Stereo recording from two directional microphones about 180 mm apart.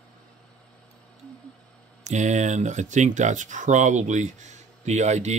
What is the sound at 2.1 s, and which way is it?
Speech, 40° right (ahead or behind).